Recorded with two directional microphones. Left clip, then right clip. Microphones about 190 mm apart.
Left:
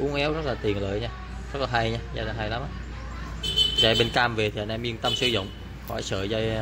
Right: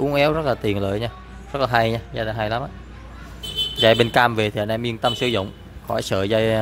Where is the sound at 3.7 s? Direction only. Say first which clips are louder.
Right 9 dB; 30° right (ahead or behind).